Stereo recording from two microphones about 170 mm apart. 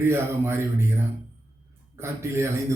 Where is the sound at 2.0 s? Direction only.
15° right (ahead or behind).